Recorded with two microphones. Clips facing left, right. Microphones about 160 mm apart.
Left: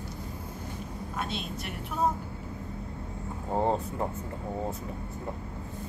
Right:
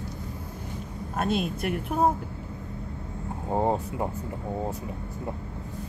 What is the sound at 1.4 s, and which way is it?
Speech, 55° right (ahead or behind).